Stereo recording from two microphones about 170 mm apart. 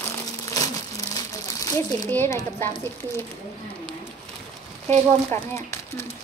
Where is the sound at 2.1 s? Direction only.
15° left (ahead or behind).